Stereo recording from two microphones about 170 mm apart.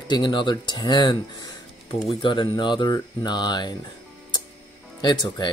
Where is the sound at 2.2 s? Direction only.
30° left (ahead or behind).